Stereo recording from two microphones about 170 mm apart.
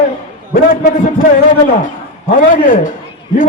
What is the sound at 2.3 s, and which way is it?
Speech, 50° left (ahead or behind).